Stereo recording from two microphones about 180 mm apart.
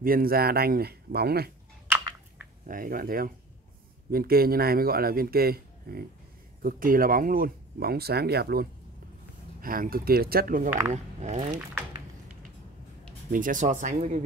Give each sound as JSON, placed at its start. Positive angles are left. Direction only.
{"t": 0.0, "sound": "speech", "side_deg": -55}
{"t": 2.6, "sound": "speech", "side_deg": -50}
{"t": 10.9, "sound": "speech", "side_deg": -40}
{"t": 13.3, "sound": "speech", "side_deg": -45}